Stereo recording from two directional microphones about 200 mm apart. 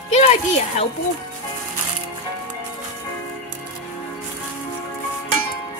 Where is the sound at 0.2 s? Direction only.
30° left (ahead or behind).